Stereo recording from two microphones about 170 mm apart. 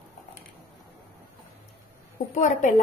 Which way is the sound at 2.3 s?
45° left (ahead or behind).